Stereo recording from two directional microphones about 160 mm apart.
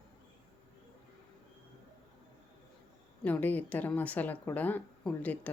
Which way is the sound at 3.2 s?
10° left (ahead or behind).